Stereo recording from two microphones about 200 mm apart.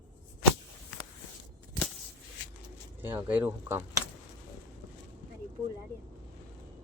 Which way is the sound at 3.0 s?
10° right (ahead or behind).